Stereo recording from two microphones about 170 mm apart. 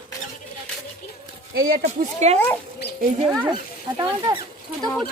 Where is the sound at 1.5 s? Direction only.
60° right (ahead or behind).